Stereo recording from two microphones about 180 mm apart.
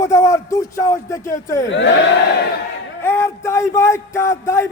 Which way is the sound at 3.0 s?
15° left (ahead or behind).